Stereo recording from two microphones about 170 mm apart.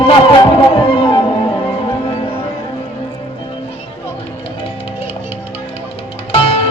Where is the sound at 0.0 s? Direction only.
30° left (ahead or behind).